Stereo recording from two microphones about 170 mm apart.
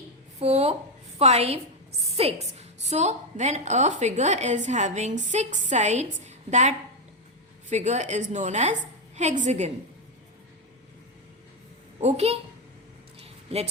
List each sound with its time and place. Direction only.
0.3 s a woman's voice: 40° right (ahead or behind)
11.9 s a woman's voice: 40° right (ahead or behind)
13.2 s a sound: 35° right (ahead or behind)